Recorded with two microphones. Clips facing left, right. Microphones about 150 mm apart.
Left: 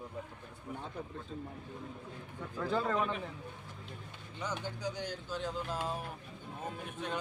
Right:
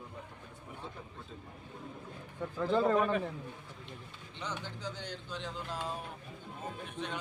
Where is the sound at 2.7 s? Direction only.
25° right (ahead or behind).